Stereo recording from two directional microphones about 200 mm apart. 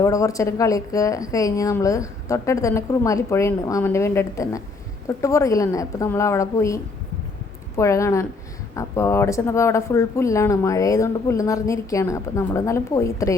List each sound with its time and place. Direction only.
0.0 s speech: 15° left (ahead or behind)